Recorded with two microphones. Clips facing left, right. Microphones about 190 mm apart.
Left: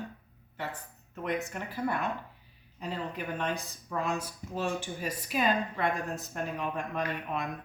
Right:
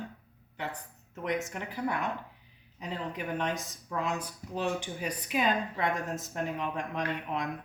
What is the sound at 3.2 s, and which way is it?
Speech, 20° right (ahead or behind).